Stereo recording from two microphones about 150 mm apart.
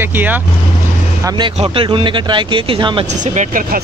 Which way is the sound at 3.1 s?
60° right (ahead or behind).